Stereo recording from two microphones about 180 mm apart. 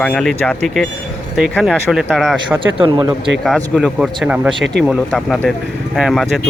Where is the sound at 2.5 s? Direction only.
30° right (ahead or behind).